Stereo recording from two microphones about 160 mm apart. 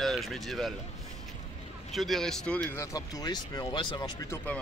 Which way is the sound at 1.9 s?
Centre (ahead or behind).